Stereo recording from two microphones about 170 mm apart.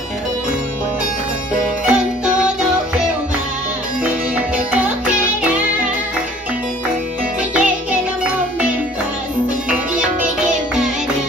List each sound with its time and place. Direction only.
1.6 s music: 5° right (ahead or behind)
7.5 s music: 5° right (ahead or behind)